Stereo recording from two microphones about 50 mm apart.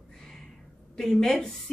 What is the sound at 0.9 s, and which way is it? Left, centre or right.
Speech, centre.